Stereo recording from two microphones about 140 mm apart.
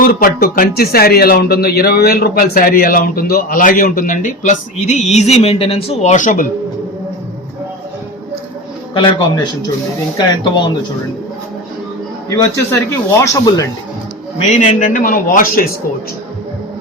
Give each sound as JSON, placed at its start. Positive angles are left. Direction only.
{"t": 0.0, "sound": "speech", "side_deg": 90}
{"t": 9.0, "sound": "speech", "side_deg": 30}
{"t": 12.3, "sound": "speech", "side_deg": 20}
{"t": 14.5, "sound": "a man's voice", "side_deg": 65}